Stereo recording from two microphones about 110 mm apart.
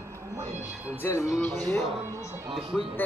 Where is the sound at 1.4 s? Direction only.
10° left (ahead or behind).